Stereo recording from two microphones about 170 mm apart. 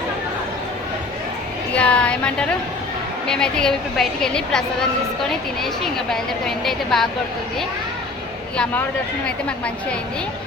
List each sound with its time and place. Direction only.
1.7 s a woman's voice: 5° left (ahead or behind)
5.6 s a woman's voice: centre (ahead or behind)